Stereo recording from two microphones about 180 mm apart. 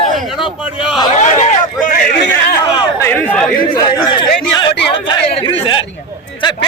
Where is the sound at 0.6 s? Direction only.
5° right (ahead or behind).